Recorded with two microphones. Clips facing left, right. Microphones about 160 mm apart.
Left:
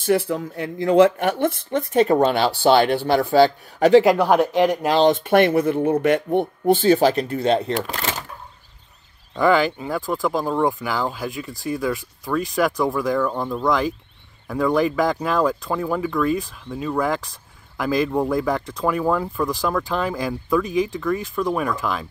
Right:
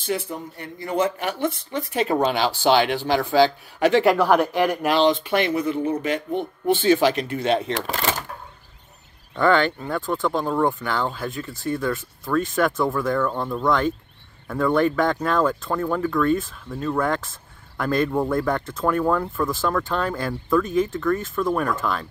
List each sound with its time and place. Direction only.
0.0 s speech: 65° left (ahead or behind); by 1.1 s 85° left
2.0 s speech: 50° left (ahead or behind)
4.0 s speech: 15° left (ahead or behind)
4.9 s speech: 50° left (ahead or behind)
6.7 s speech: 35° left (ahead or behind)
9.4 s speech: 5° left (ahead or behind)